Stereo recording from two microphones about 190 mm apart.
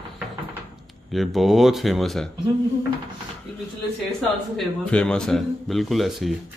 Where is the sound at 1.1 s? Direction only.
Centre (ahead or behind).